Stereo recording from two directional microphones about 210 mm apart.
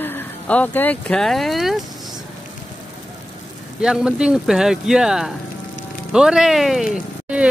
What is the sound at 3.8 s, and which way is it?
Speech, 5° right (ahead or behind).